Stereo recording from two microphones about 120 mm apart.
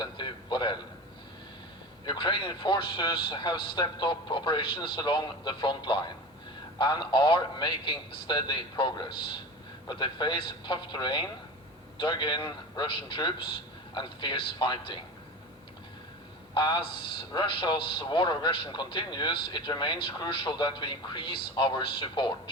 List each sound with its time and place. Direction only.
0.0 s a sound: 40° left (ahead or behind)
2.0 s a man's voice: 40° left (ahead or behind)
16.6 s a man's voice: 40° left (ahead or behind)